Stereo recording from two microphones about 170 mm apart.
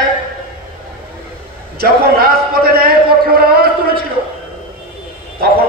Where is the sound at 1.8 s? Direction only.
65° right (ahead or behind).